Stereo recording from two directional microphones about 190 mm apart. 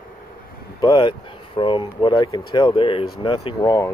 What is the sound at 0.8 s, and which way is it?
Speech, 25° left (ahead or behind).